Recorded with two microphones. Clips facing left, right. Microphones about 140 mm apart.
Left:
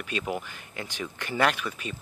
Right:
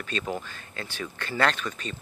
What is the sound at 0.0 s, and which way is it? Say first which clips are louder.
Speech: even; 15° left (ahead or behind).